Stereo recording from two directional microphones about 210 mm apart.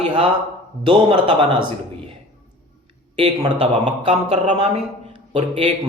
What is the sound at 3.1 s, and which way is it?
A man's voice, 25° right (ahead or behind).